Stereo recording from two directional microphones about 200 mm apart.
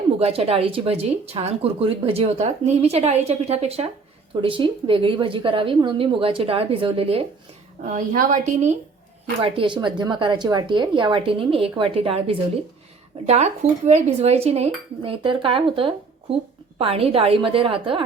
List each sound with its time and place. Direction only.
0.2 s speech: 30° right (ahead or behind)
7.9 s speech: 40° right (ahead or behind)
9.4 s speech: 25° right (ahead or behind)